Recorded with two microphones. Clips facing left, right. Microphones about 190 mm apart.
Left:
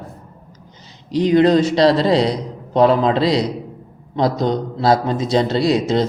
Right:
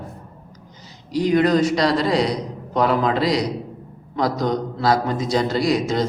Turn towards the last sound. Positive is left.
turn(degrees=25)  # may be behind; listen again after turning